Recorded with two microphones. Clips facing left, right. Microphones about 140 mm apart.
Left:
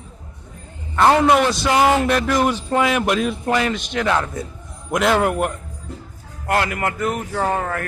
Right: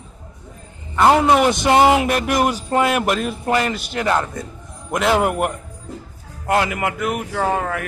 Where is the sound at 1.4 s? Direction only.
20° right (ahead or behind).